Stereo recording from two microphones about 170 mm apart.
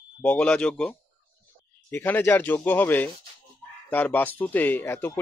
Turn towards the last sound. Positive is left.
turn(degrees=15)  # may be behind; listen again after turning